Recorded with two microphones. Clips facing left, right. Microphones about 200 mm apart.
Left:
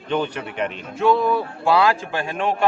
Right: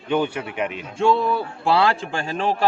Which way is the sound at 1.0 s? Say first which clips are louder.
Left 1 dB; 30° right (ahead or behind).